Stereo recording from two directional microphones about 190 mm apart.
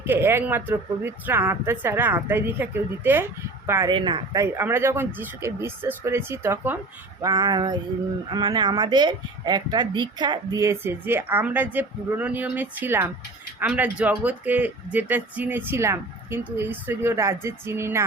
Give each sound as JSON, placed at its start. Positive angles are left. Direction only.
{"t": 0.0, "sound": "a woman's voice", "side_deg": -10}